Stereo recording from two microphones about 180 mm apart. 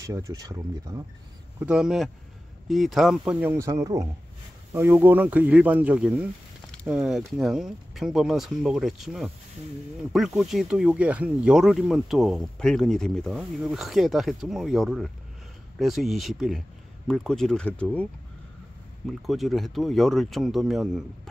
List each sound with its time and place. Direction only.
0.0 s speech: 20° right (ahead or behind)
1.6 s speech: 5° right (ahead or behind)
19.0 s speech: centre (ahead or behind)